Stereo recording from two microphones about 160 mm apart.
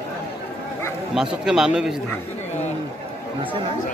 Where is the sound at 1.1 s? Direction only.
5° right (ahead or behind).